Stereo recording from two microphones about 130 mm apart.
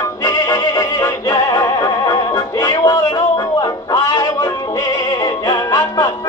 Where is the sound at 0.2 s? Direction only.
25° left (ahead or behind).